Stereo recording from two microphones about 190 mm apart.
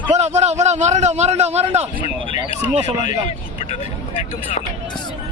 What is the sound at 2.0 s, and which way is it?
Speech, 30° left (ahead or behind).